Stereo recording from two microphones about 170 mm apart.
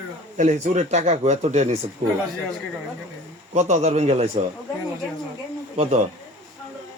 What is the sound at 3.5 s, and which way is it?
Speech, 40° right (ahead or behind).